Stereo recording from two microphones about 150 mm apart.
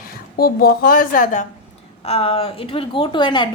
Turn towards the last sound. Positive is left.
turn(degrees=30)  # may be behind; listen again after turning